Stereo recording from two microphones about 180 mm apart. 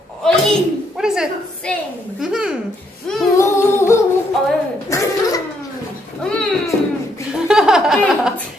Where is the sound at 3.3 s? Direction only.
15° left (ahead or behind).